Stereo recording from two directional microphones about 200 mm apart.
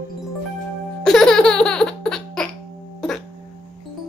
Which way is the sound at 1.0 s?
5° left (ahead or behind).